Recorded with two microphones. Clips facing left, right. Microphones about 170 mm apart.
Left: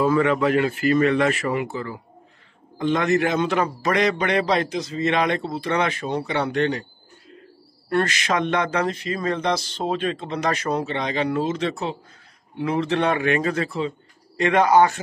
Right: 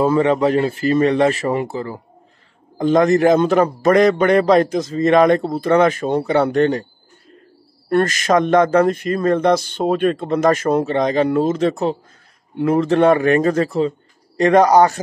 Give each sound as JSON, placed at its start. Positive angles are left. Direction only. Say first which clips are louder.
{"t": 0.0, "sound": "a man's voice", "louder": "right 4 dB", "side_deg": -30}
{"t": 7.9, "sound": "a man's voice", "louder": "right 7 dB", "side_deg": -45}